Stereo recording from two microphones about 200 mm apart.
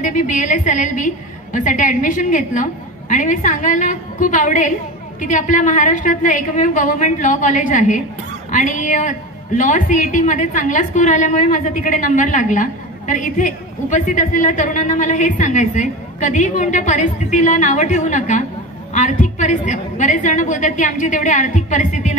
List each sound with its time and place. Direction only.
0.0 s a woman's voice: 40° left (ahead or behind)